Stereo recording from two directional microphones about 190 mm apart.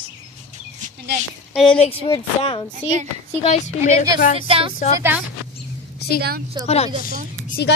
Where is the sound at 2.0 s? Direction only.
30° left (ahead or behind).